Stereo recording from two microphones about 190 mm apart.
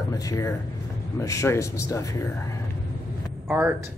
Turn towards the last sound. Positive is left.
turn(degrees=-10)  # may be behind; listen again after turning